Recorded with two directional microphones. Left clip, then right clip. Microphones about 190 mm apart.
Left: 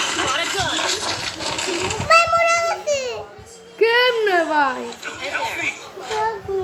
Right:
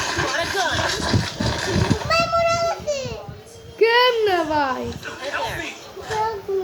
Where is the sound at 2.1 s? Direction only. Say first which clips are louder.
Left 5 dB; 40° left (ahead or behind).